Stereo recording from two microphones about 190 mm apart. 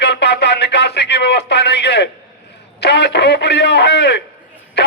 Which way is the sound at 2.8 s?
65° left (ahead or behind).